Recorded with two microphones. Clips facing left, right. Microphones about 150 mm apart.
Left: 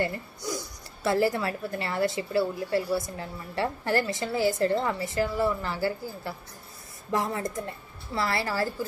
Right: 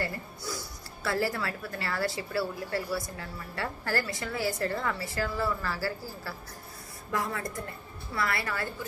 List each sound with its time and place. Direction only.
0.0 s speech: 20° left (ahead or behind)